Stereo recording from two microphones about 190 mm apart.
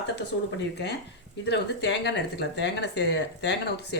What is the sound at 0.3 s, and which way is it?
Speech, 85° left.